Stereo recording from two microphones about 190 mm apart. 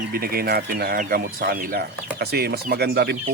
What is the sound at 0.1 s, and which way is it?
Speech, 50° right (ahead or behind).